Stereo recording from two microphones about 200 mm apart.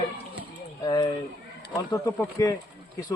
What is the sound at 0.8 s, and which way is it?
Speech, 20° left (ahead or behind).